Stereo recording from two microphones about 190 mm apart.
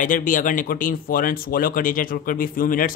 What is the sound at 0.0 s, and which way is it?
Speech, 45° left (ahead or behind).